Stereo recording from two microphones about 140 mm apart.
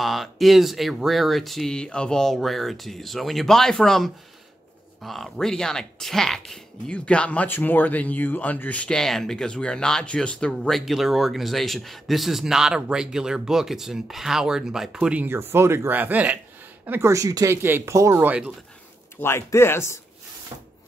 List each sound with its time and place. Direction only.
0.0 s speech: centre (ahead or behind)
19.1 s speech: 20° left (ahead or behind)